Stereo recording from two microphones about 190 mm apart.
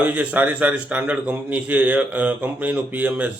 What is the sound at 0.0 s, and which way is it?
A man's voice, 10° right (ahead or behind).